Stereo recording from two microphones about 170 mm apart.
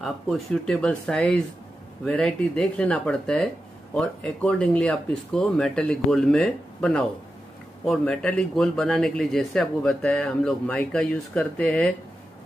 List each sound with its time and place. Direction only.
0.0 s speech: centre (ahead or behind)